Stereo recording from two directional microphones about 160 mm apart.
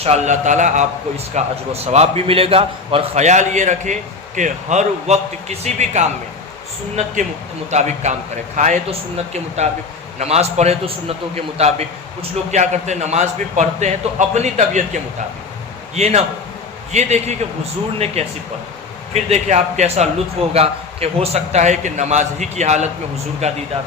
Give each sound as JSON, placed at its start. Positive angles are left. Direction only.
{"t": 0.0, "sound": "a man's voice", "side_deg": -45}
{"t": 7.7, "sound": "a man's voice", "side_deg": -45}